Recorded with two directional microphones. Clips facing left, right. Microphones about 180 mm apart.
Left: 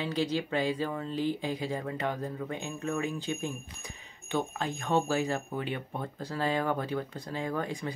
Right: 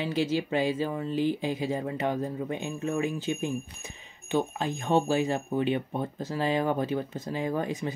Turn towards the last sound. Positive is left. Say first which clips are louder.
# right 4 dB
turn(degrees=-20)  # may be behind; listen again after turning